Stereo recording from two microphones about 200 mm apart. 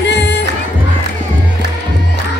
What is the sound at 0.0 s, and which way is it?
Music, 60° left (ahead or behind).